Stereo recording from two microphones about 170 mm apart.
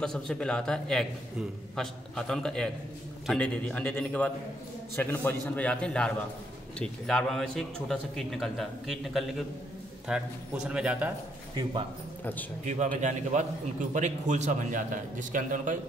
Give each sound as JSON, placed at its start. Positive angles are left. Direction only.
{"t": 0.0, "sound": "a man's voice", "side_deg": 5}
{"t": 12.6, "sound": "a man's voice", "side_deg": -45}